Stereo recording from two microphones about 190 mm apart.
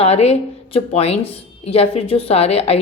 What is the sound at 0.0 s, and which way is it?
Speech, 35° left (ahead or behind).